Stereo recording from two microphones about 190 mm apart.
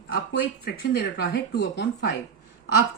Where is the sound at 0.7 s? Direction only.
55° left (ahead or behind).